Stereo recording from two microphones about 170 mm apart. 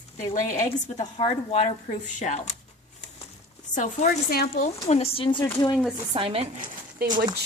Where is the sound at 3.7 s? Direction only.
45° left (ahead or behind).